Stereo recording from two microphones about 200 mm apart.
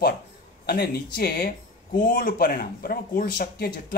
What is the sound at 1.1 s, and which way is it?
Speech, 45° left (ahead or behind).